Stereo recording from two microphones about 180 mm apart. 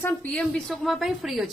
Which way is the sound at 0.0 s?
5° left (ahead or behind).